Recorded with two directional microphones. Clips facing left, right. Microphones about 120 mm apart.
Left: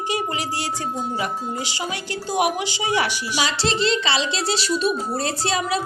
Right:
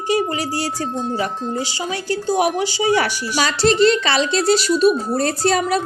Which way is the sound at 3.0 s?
45° right (ahead or behind).